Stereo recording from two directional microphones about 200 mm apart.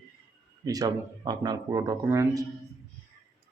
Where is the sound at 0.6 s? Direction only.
20° right (ahead or behind).